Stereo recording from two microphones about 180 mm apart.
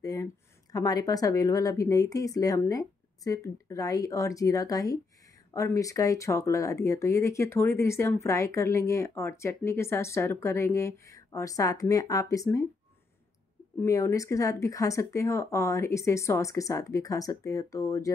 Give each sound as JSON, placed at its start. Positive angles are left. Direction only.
{"t": 0.0, "sound": "a woman's voice", "side_deg": 20}
{"t": 13.7, "sound": "speech", "side_deg": 20}